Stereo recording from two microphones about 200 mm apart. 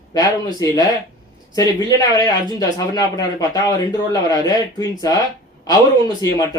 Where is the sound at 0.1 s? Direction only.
20° left (ahead or behind).